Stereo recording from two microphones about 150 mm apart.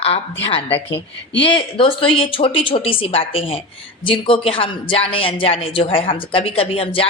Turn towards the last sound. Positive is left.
turn(degrees=40)  # may be behind; listen again after turning